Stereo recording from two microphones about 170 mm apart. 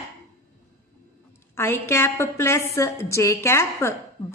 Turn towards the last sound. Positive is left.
turn(degrees=15)  # may be behind; listen again after turning